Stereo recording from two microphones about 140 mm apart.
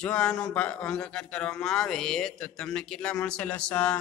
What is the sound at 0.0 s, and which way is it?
A man's voice, 5° left (ahead or behind).